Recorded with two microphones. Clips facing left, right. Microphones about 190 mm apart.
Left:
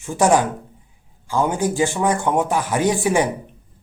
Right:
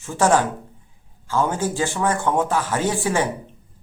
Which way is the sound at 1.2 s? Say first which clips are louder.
Left 2 dB; 15° left (ahead or behind).